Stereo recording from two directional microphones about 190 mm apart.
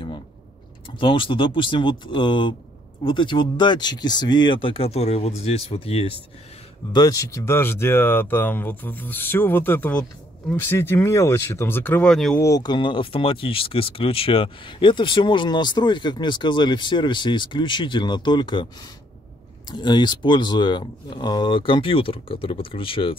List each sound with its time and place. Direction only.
0.9 s speech: 25° left (ahead or behind)
6.9 s speech: 20° left (ahead or behind); by 12.4 s 5° left (ahead or behind)
12.4 s speech: 15° left (ahead or behind)
19.7 s speech: 25° left (ahead or behind)